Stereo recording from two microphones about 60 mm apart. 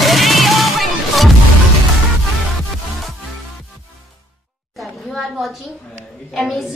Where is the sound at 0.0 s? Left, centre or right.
Centre.